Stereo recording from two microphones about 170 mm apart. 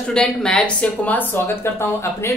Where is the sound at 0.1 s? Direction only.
5° left (ahead or behind).